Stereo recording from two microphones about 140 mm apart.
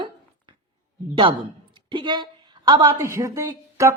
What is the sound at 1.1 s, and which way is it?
A woman's voice, 35° right (ahead or behind).